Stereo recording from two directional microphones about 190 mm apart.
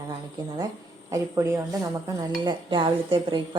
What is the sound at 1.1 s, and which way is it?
Speech, 15° right (ahead or behind).